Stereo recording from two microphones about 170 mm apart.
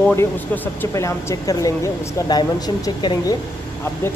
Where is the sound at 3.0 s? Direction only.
25° left (ahead or behind).